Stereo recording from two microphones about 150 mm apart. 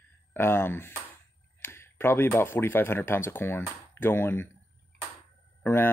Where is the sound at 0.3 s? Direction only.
15° left (ahead or behind).